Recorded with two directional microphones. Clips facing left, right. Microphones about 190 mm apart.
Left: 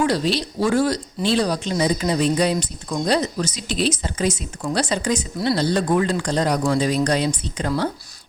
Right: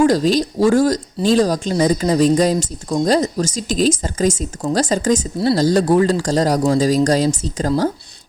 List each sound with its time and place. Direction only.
0.0 s speech: 40° right (ahead or behind)